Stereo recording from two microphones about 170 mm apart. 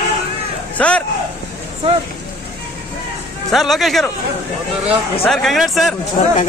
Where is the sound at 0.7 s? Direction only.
5° left (ahead or behind).